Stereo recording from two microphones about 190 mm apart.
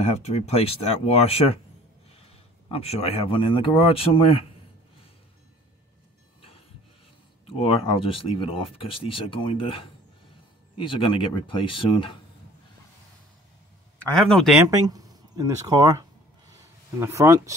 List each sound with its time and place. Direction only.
0.0 s speech: 35° left (ahead or behind)
2.7 s speech: 35° left (ahead or behind)
7.4 s speech: 30° left (ahead or behind)
10.8 s speech: 25° left (ahead or behind)
14.1 s speech: centre (ahead or behind)
14.6 s a sound: 20° right (ahead or behind)
17.0 s speech: 15° right (ahead or behind)